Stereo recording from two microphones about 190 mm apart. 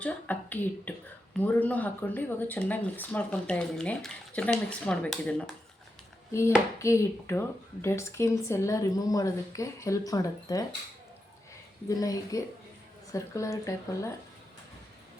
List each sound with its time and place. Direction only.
0.0 s speech: 10° left (ahead or behind)
6.7 s speech: 15° left (ahead or behind)
11.9 s speech: 20° left (ahead or behind)